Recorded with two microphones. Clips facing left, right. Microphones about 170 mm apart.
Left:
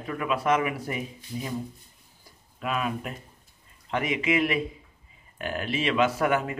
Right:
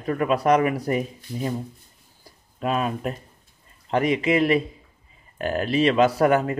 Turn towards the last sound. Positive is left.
turn(degrees=-40)  # may be behind; listen again after turning